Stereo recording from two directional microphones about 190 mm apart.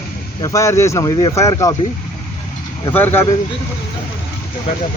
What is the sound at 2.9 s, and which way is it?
Speech, 10° left (ahead or behind).